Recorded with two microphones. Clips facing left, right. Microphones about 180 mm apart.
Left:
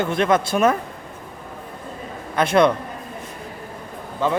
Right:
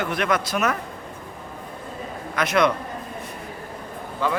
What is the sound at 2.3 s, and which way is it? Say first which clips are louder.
Speech: left 4 dB; 30° left (ahead or behind).